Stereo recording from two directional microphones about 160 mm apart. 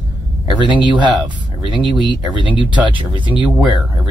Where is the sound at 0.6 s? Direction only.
30° right (ahead or behind).